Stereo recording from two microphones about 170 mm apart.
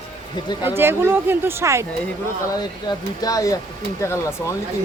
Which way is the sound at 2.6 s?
25° left (ahead or behind).